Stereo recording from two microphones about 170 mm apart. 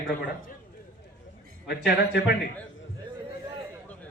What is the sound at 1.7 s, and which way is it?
Speech, 80° left.